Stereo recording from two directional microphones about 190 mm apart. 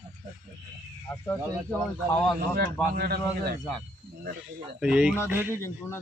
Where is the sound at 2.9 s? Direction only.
50° right (ahead or behind).